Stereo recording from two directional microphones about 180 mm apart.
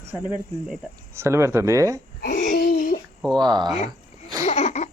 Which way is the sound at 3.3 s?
25° right (ahead or behind).